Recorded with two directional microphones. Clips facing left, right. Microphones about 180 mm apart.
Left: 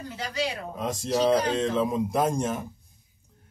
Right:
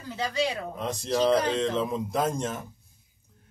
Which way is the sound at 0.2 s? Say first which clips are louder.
Right 3 dB; 25° right (ahead or behind).